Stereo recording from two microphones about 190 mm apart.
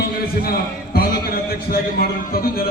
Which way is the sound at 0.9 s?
50° left (ahead or behind).